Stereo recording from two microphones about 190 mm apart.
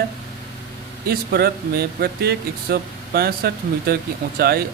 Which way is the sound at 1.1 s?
55° right (ahead or behind).